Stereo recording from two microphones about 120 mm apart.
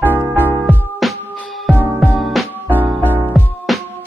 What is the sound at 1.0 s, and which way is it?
Music, centre (ahead or behind).